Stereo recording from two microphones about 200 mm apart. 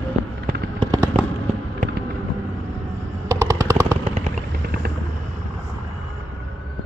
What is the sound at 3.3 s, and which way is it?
Machine gun, 15° right (ahead or behind).